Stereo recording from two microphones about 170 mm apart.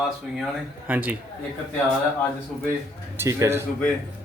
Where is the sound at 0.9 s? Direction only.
10° right (ahead or behind).